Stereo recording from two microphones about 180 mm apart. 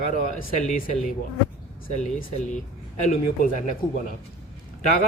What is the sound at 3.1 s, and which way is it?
A man's voice, 50° left (ahead or behind).